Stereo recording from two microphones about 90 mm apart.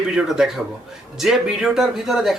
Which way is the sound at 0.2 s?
5° right (ahead or behind).